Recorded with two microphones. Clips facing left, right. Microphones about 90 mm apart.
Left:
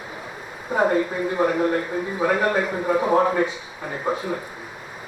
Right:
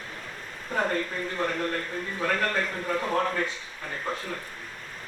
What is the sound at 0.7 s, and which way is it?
A man's voice, 15° left (ahead or behind).